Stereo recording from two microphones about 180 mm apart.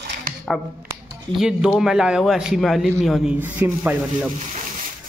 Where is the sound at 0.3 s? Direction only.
50° right (ahead or behind).